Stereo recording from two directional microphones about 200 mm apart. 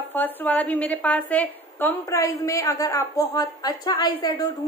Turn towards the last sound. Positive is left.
turn(degrees=20)  # may be behind; listen again after turning